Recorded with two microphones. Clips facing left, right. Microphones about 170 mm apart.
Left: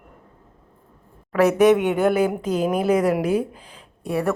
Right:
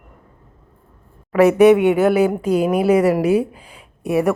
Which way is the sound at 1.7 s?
5° right (ahead or behind).